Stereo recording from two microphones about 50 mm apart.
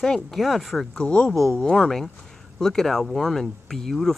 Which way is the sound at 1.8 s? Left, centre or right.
Centre.